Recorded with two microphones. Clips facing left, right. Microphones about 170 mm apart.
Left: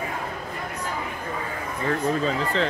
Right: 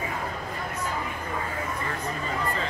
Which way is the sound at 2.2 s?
75° left (ahead or behind).